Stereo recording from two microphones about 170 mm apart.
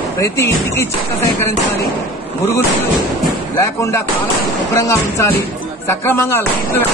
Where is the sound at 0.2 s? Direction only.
15° left (ahead or behind).